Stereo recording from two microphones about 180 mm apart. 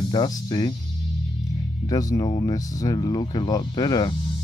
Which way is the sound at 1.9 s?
20° left (ahead or behind).